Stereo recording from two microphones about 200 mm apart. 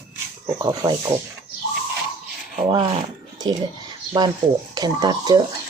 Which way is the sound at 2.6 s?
25° right (ahead or behind).